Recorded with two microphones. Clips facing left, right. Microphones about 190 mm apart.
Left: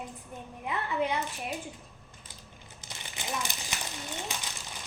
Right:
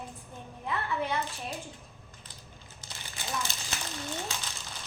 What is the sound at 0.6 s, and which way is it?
Speech, 15° left (ahead or behind).